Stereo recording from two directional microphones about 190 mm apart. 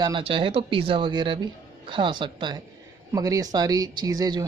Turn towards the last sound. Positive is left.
turn(degrees=-20)  # may be behind; listen again after turning